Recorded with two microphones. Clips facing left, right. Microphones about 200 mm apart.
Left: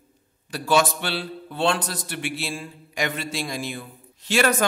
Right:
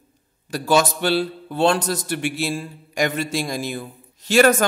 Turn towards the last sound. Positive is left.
turn(degrees=-40)  # may be behind; listen again after turning